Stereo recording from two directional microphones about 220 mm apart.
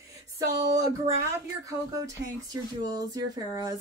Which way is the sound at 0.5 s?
15° right (ahead or behind).